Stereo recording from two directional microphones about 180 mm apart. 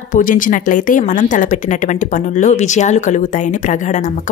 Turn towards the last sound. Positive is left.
turn(degrees=45)  # may be behind; listen again after turning